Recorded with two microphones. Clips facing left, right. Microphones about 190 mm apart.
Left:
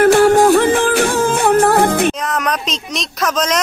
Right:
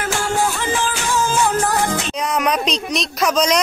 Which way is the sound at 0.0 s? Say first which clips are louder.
Left 12 dB; 60° left (ahead or behind).